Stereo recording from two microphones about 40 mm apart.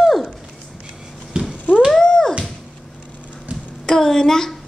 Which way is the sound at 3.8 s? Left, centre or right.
Centre.